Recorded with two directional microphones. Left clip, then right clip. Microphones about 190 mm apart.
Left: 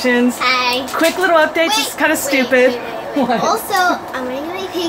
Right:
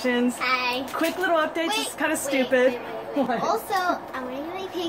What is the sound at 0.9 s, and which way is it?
Speech, 20° left (ahead or behind).